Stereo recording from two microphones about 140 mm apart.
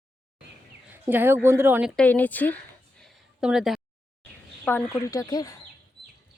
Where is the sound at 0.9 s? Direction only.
15° right (ahead or behind).